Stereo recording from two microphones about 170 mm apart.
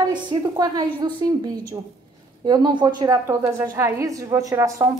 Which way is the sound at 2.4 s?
25° right (ahead or behind).